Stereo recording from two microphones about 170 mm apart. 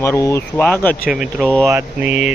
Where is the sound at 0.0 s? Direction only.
15° left (ahead or behind).